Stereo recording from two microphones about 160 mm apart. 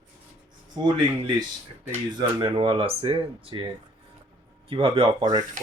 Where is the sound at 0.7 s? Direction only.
25° right (ahead or behind).